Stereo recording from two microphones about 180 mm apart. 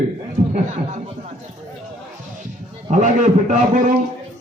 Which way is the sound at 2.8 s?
40° right (ahead or behind).